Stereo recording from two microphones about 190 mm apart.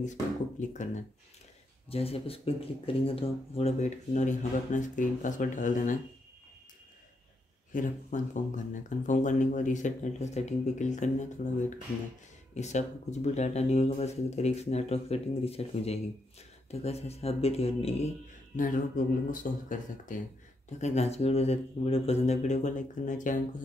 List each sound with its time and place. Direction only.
0.0 s speech: 40° left (ahead or behind)
7.7 s speech: 40° left (ahead or behind)
12.5 s speech: 35° left (ahead or behind)
19.4 s speech: 45° left (ahead or behind)